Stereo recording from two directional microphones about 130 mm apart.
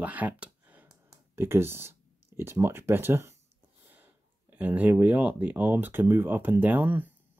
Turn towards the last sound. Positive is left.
turn(degrees=-15)  # may be behind; listen again after turning